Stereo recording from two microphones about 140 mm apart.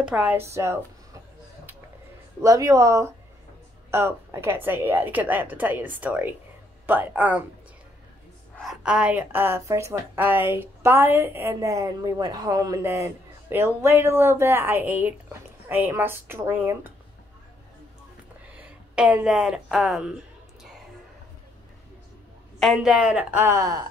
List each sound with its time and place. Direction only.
0.0 s speech: 10° right (ahead or behind)
2.4 s a woman's voice: 25° right (ahead or behind)
8.5 s a woman's voice: 5° right (ahead or behind)
18.6 s speech: 10° right (ahead or behind)
22.6 s a woman's voice: centre (ahead or behind); by 23.8 s 25° right (ahead or behind)